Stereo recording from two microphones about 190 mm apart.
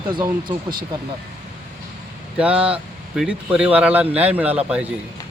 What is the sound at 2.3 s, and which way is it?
A man's voice, 5° right (ahead or behind).